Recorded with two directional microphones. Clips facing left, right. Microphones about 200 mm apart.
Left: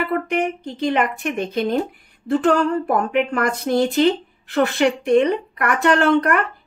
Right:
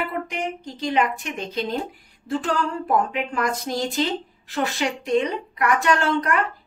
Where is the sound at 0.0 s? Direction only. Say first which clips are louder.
Left 6 dB; 60° left (ahead or behind).